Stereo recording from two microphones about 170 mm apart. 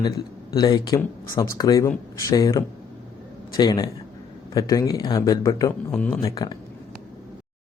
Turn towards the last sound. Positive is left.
turn(degrees=20)  # may be behind; listen again after turning